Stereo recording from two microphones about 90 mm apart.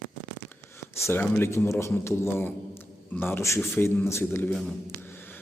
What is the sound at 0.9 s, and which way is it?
A man's voice, 25° left (ahead or behind).